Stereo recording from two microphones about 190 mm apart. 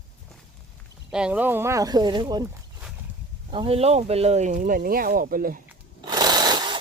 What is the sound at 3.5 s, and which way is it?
Speech, 30° right (ahead or behind).